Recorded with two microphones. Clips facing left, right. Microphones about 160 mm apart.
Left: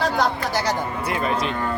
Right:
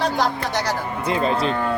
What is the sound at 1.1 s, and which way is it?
Speech, 25° right (ahead or behind).